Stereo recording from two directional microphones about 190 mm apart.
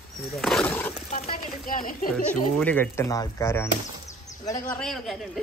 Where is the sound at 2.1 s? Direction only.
5° left (ahead or behind).